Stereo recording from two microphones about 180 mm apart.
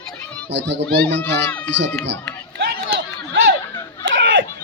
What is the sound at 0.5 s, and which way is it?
Speech, 80° right.